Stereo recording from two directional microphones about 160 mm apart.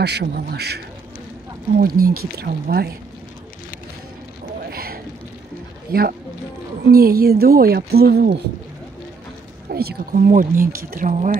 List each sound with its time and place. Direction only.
0.0 s a man's voice: 90° right
1.8 s a woman's voice: 65° right (ahead or behind)
4.6 s a sound: 70° right (ahead or behind)
5.9 s a woman's voice: 75° right (ahead or behind)
9.7 s speech: 75° right (ahead or behind)